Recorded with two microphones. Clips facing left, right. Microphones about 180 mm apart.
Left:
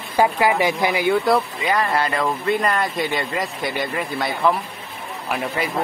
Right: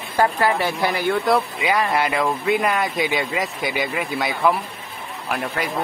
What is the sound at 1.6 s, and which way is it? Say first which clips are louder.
Speech: even; 10° right (ahead or behind).